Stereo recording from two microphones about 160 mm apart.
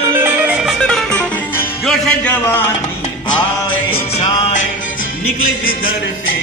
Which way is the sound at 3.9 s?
40° left (ahead or behind).